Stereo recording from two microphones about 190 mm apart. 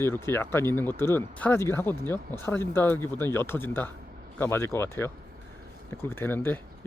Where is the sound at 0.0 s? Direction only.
15° left (ahead or behind).